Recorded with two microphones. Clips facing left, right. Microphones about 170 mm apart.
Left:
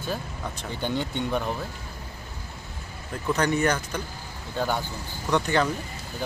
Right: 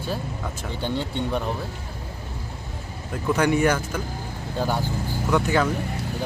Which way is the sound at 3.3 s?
10° right (ahead or behind).